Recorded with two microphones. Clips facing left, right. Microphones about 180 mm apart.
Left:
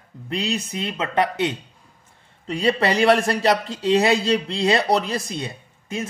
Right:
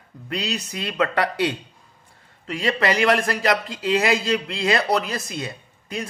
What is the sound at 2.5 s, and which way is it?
A man's voice, 30° left (ahead or behind).